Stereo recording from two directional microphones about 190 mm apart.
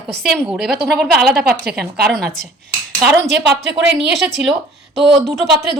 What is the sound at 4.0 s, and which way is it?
Speech, centre (ahead or behind).